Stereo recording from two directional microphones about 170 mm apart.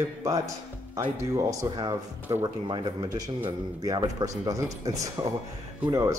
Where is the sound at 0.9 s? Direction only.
20° right (ahead or behind).